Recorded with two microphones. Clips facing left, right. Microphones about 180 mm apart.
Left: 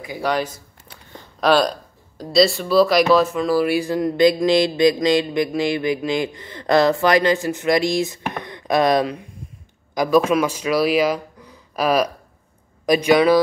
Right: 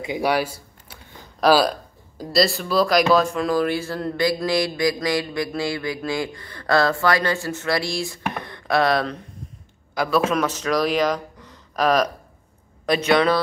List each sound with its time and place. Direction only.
0.0 s speech: 20° right (ahead or behind)
0.3 s a sound: 10° right (ahead or behind)
1.4 s speech: 5° right (ahead or behind); by 13.4 s 10° left (ahead or behind)